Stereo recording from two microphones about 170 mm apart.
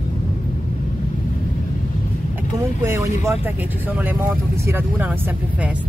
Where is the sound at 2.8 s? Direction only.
15° right (ahead or behind).